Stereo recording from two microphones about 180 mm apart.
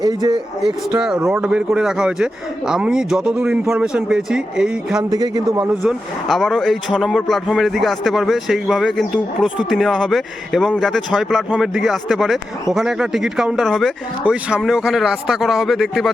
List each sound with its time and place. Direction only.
0.0 s speech: 25° right (ahead or behind)
0.6 s speech: 5° right (ahead or behind)
5.1 s speech: 20° right (ahead or behind)
5.8 s speech: centre (ahead or behind)